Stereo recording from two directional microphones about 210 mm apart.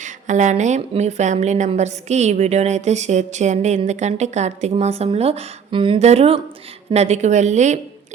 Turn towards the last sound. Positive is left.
turn(degrees=-35)  # may be behind; listen again after turning